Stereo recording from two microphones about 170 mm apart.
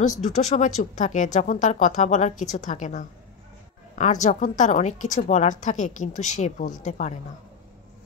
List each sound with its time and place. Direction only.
0.0 s a woman's voice: 45° left (ahead or behind)